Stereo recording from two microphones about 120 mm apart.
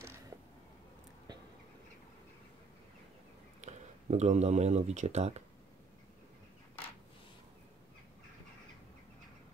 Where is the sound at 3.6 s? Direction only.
75° right (ahead or behind).